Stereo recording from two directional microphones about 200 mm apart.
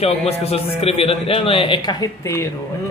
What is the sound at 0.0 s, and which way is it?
A man's voice, 30° left (ahead or behind).